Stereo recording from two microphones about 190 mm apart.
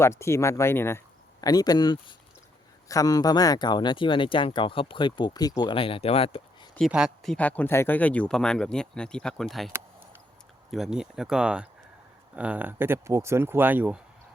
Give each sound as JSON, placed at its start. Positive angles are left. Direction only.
{"t": 0.0, "sound": "speech", "side_deg": 15}
{"t": 6.7, "sound": "speech", "side_deg": 0}